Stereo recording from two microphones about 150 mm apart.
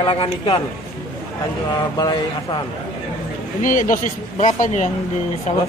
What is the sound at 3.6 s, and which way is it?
Speech, 60° left (ahead or behind).